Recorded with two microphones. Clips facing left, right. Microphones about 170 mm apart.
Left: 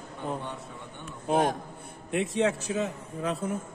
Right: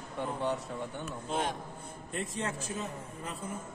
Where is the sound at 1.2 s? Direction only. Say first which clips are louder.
Left 9 dB; 50° left (ahead or behind).